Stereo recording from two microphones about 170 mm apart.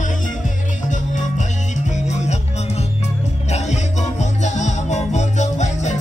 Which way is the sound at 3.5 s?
40° left (ahead or behind).